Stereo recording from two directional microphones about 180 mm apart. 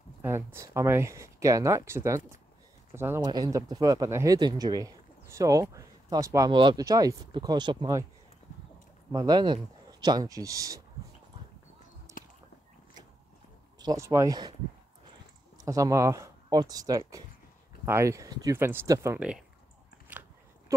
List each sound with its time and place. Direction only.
0.2 s speech: 15° right (ahead or behind)
9.1 s speech: 20° right (ahead or behind)
12.1 s a sound: 15° right (ahead or behind)
13.7 s speech: 20° right (ahead or behind)
15.5 s speech: 20° right (ahead or behind)